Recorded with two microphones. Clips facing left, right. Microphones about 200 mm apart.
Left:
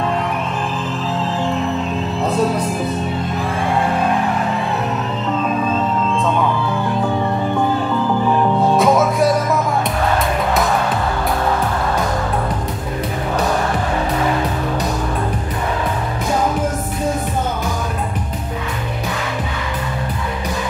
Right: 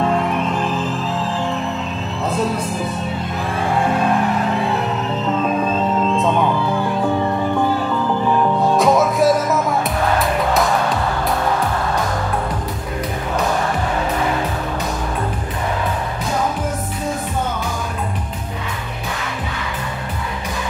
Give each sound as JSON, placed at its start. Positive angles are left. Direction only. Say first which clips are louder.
{"t": 8.5, "sound": "music", "louder": "left 1 dB", "side_deg": 0}